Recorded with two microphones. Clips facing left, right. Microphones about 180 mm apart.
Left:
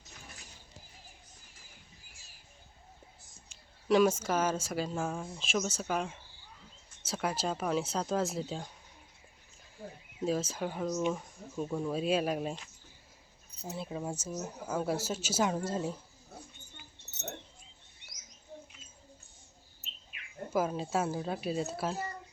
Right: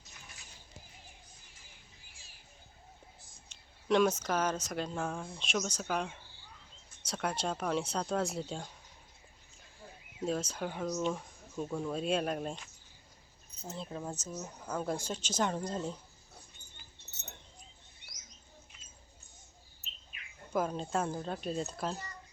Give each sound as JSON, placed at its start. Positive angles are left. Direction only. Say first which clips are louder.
{"t": 3.8, "sound": "speech", "louder": "left 2 dB", "side_deg": 5}
{"t": 10.2, "sound": "speech", "louder": "left 2 dB", "side_deg": 5}
{"t": 13.7, "sound": "speech", "louder": "left 3 dB", "side_deg": 10}
{"t": 16.7, "sound": "dog", "louder": "left 4 dB", "side_deg": 70}
{"t": 20.5, "sound": "speech", "louder": "left 2 dB", "side_deg": 5}